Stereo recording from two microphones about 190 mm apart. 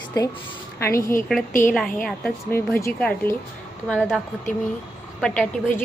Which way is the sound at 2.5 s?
15° left (ahead or behind).